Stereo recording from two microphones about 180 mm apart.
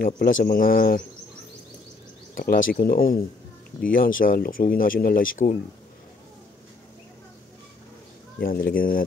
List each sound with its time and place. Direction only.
0.0 s speech: 50° left (ahead or behind)
2.3 s speech: 55° left (ahead or behind)
8.4 s speech: 55° left (ahead or behind)